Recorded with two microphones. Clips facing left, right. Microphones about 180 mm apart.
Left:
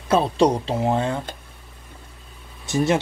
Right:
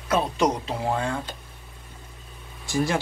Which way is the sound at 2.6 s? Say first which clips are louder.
Left 4 dB; 20° left (ahead or behind).